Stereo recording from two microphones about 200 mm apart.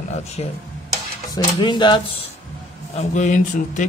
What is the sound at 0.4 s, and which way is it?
Speech, 30° left (ahead or behind).